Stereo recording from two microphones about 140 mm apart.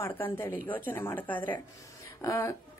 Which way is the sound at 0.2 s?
15° left (ahead or behind).